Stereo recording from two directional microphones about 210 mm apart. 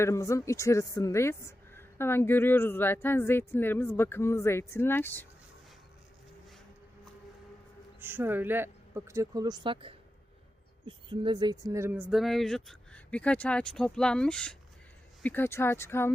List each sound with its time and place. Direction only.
0.0 s a woman's voice: 15° left (ahead or behind)
7.9 s a woman's voice: 10° right (ahead or behind); by 16.1 s 10° left (ahead or behind)